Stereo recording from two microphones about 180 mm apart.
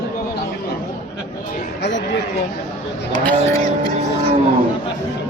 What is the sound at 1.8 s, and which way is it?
Speech, 75° left (ahead or behind).